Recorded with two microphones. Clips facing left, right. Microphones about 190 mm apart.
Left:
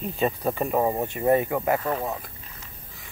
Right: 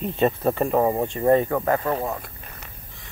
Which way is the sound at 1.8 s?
35° right (ahead or behind).